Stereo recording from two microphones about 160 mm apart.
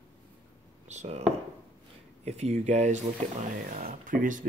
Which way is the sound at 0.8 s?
45° right (ahead or behind).